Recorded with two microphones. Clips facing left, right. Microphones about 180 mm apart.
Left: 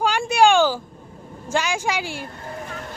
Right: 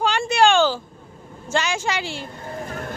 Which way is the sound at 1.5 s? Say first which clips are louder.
Even; 10° left (ahead or behind).